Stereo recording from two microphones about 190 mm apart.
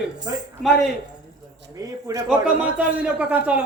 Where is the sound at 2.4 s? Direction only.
5° right (ahead or behind).